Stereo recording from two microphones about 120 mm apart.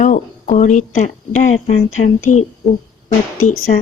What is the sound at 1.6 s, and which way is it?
Speech, 60° left (ahead or behind).